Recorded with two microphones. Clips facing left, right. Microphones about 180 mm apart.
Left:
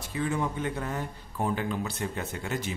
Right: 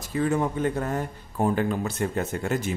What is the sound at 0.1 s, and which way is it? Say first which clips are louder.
A man's voice: right 5 dB; 45° right (ahead or behind).